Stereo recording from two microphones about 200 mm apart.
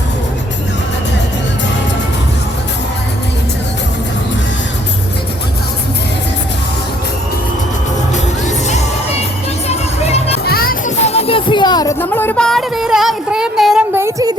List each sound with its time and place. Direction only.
8.1 s music: 35° left (ahead or behind)
10.4 s music: 50° left (ahead or behind)
11.0 s music: 30° left (ahead or behind); by 14.3 s 15° right (ahead or behind)